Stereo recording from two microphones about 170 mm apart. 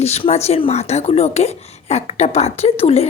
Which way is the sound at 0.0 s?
40° left (ahead or behind).